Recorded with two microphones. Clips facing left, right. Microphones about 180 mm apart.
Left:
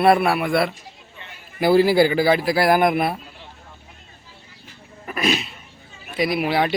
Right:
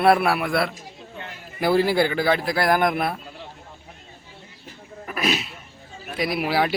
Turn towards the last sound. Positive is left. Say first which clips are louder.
# left 2 dB
turn(degrees=0)  # may be behind; listen again after turning